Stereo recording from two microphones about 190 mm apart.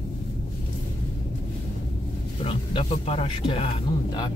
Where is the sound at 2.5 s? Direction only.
30° left (ahead or behind).